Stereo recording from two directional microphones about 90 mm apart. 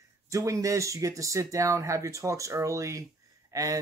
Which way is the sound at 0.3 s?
40° right (ahead or behind).